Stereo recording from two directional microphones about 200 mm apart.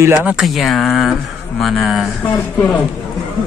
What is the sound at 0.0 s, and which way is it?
Speech, 10° right (ahead or behind).